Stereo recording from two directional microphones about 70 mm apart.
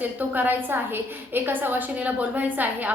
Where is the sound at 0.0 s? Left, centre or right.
Right.